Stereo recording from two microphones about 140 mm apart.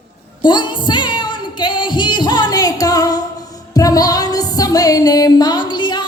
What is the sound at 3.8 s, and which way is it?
Music, 25° left (ahead or behind).